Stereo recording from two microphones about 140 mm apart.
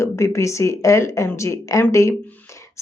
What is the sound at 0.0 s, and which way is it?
A woman's voice, 20° left (ahead or behind).